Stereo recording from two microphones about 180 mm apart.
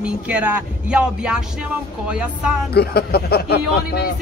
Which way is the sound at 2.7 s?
60° left (ahead or behind).